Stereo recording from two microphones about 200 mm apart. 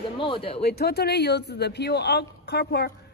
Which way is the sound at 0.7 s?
50° left (ahead or behind).